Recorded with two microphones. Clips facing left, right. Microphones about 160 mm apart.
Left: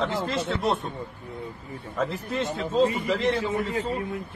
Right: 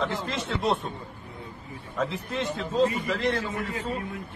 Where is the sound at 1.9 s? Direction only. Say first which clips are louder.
Left 2 dB; 5° left (ahead or behind).